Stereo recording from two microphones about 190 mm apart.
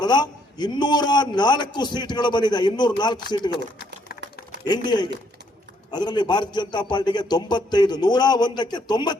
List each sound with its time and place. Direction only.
0.0 s a man's voice: 20° left (ahead or behind)
4.6 s a man's voice: 20° left (ahead or behind)